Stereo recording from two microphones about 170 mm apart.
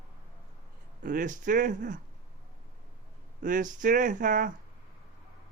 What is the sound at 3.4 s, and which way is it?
Speech, 50° right (ahead or behind).